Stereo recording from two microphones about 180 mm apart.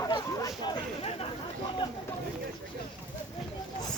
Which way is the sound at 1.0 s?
35° left (ahead or behind).